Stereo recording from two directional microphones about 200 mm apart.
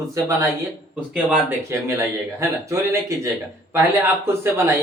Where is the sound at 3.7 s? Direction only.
10° right (ahead or behind).